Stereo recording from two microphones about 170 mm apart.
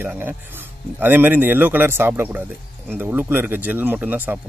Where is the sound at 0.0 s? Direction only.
10° right (ahead or behind).